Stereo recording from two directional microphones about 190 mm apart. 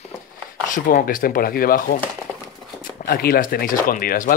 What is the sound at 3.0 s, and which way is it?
Speech, 55° left (ahead or behind).